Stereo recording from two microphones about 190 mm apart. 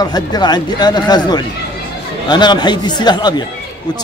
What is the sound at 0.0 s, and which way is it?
Speech, 20° left (ahead or behind).